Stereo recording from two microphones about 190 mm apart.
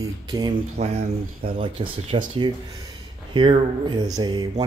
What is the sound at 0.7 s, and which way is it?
Speech, 35° right (ahead or behind).